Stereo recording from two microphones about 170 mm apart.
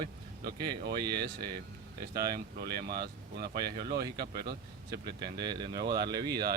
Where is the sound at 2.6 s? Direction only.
65° right (ahead or behind).